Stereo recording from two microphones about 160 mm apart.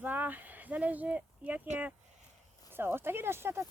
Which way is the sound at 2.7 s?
15° right (ahead or behind).